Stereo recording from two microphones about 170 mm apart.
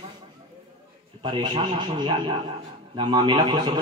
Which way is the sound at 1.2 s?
25° right (ahead or behind).